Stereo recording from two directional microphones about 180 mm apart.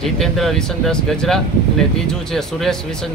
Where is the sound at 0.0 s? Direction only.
Centre (ahead or behind).